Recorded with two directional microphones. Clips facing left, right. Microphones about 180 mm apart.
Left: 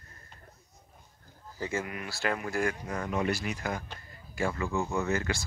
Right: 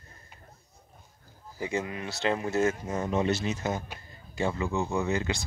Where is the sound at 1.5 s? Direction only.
15° right (ahead or behind).